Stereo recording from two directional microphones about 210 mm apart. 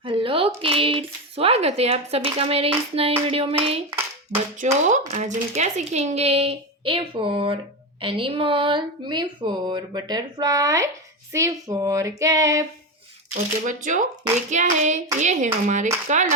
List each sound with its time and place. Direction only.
0.0 s speech: 25° right (ahead or behind)
11.3 s female singing: 15° right (ahead or behind)
13.7 s speech: 35° right (ahead or behind)